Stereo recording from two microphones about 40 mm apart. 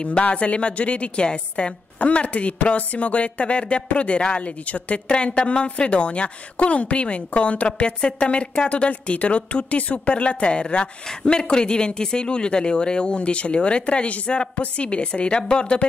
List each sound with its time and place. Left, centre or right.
0.0 s a woman's voice: left